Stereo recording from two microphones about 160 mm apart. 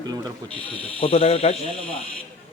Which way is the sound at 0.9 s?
35° left (ahead or behind).